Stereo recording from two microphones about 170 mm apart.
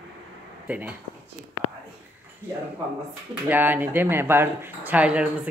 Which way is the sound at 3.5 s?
10° right (ahead or behind).